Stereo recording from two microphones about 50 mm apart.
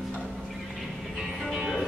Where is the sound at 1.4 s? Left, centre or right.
Centre.